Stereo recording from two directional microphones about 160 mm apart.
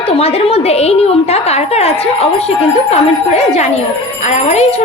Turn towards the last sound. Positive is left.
turn(degrees=45)  # may be behind; listen again after turning